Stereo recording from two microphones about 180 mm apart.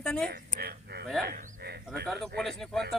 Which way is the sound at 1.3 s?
60° right (ahead or behind).